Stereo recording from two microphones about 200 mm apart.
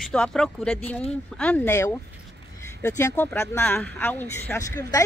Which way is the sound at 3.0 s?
15° left (ahead or behind).